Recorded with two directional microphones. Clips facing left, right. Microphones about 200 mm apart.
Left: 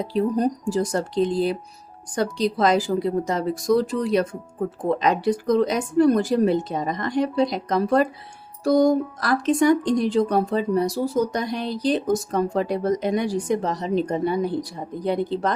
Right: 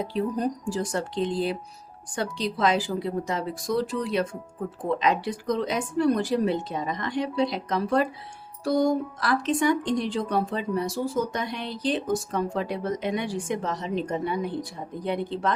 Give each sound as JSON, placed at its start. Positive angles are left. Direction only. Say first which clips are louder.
{"t": 0.0, "sound": "speech", "louder": "left 5 dB", "side_deg": 40}